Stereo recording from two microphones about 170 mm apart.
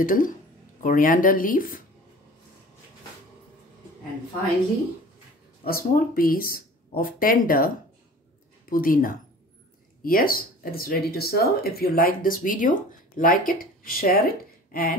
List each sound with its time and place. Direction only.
0.0 s speech: 50° left (ahead or behind)
5.7 s speech: 60° left (ahead or behind)
14.7 s a sound: 60° left (ahead or behind)